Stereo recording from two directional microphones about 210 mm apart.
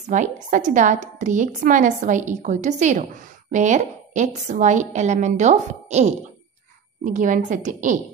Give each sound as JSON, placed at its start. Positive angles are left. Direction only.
{"t": 0.1, "sound": "a woman's voice", "side_deg": -35}